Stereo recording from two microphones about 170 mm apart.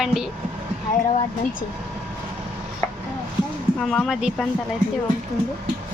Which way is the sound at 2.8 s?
15° left (ahead or behind).